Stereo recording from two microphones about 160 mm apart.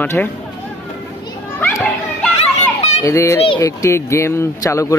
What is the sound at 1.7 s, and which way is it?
Children playing, centre (ahead or behind).